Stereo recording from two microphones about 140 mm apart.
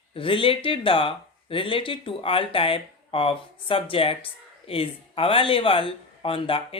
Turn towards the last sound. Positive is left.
turn(degrees=40)  # may be behind; listen again after turning